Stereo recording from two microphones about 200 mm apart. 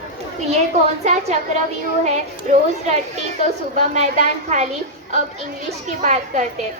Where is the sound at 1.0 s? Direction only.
35° right (ahead or behind).